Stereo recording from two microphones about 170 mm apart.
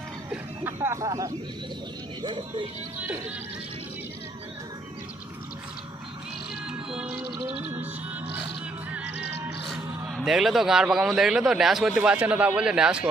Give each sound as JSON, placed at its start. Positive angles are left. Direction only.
{"t": 0.3, "sound": "a sound", "side_deg": -15}
{"t": 2.2, "sound": "speech", "side_deg": -30}
{"t": 3.0, "sound": "music", "side_deg": -10}
{"t": 6.7, "sound": "music", "side_deg": -5}
{"t": 7.3, "sound": "music", "side_deg": -30}
{"t": 8.9, "sound": "music", "side_deg": -10}
{"t": 10.2, "sound": "a man's voice", "side_deg": 0}